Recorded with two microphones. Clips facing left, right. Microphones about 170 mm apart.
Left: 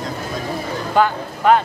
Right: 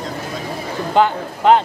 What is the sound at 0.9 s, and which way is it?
Speech, 20° right (ahead or behind).